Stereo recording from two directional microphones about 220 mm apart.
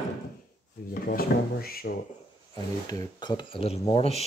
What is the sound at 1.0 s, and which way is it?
Drawer open or close, 45° left (ahead or behind).